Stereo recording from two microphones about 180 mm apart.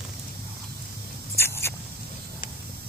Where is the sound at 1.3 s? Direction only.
15° left (ahead or behind).